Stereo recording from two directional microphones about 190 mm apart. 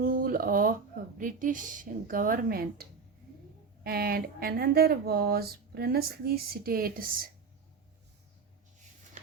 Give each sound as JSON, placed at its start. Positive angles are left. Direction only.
{"t": 0.0, "sound": "a sound", "side_deg": -50}
{"t": 1.2, "sound": "speech", "side_deg": -45}
{"t": 3.8, "sound": "speech", "side_deg": -55}